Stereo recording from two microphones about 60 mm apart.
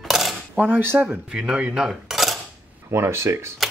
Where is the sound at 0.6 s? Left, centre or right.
Right.